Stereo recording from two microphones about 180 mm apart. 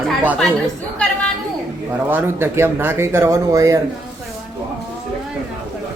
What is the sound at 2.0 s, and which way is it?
A man's voice, 10° right (ahead or behind).